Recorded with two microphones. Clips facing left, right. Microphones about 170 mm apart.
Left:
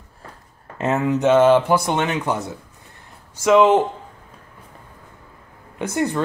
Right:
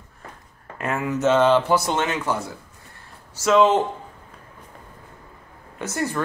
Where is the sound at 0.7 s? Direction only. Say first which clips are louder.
Left 5 dB; 25° left (ahead or behind).